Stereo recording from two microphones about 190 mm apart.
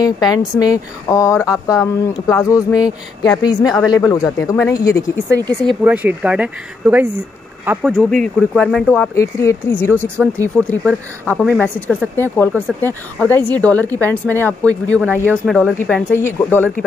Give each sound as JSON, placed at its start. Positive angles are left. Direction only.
{"t": 0.0, "sound": "speech", "side_deg": 20}
{"t": 5.9, "sound": "speech", "side_deg": -5}
{"t": 7.9, "sound": "speech", "side_deg": 5}
{"t": 9.9, "sound": "speech", "side_deg": -10}
{"t": 10.3, "sound": "speech", "side_deg": 10}